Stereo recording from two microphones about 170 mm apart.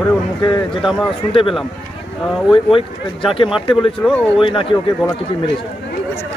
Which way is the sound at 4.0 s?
5° left (ahead or behind).